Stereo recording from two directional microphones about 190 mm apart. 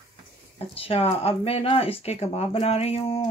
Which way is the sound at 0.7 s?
30° left (ahead or behind).